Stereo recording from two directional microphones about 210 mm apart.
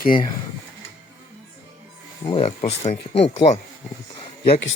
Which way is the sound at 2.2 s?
25° left (ahead or behind).